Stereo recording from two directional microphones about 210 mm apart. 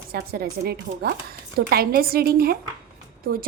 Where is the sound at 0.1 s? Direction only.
45° right (ahead or behind).